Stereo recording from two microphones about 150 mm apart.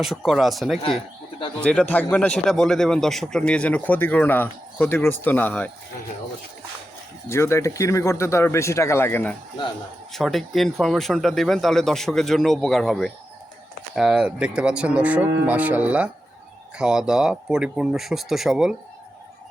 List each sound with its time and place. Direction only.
0.0 s a man's voice: centre (ahead or behind)
7.3 s speech: 15° left (ahead or behind)
10.1 s speech: centre (ahead or behind)